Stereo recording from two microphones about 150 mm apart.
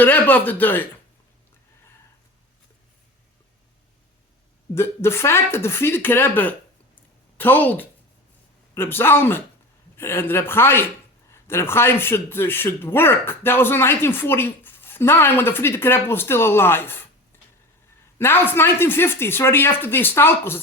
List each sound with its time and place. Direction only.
0.0 s a man's voice: 10° left (ahead or behind)
4.7 s a man's voice: 15° left (ahead or behind)
18.2 s a man's voice: 15° left (ahead or behind)